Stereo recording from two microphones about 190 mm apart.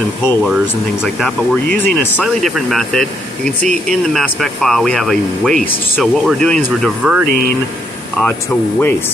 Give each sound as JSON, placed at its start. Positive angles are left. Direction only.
{"t": 1.0, "sound": "speech", "side_deg": 5}
{"t": 8.2, "sound": "speech", "side_deg": 10}